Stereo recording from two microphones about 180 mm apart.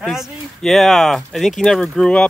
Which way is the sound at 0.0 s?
Centre (ahead or behind).